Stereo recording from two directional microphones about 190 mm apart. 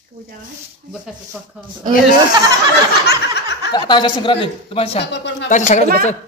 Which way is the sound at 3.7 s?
25° left (ahead or behind).